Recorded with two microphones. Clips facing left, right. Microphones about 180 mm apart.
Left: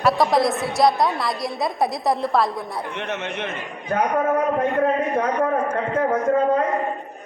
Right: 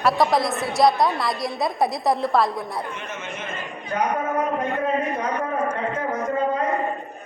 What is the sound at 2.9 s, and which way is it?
Speech, 70° left (ahead or behind).